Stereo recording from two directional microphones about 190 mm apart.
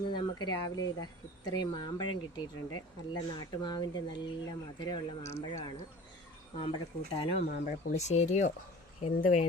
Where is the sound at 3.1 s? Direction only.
25° left (ahead or behind).